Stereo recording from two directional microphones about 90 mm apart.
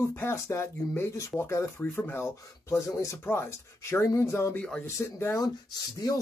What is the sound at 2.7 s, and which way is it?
Speech, 35° left (ahead or behind).